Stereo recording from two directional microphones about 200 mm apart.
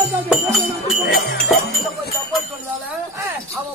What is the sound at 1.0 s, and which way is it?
Jingle bell, 55° left (ahead or behind).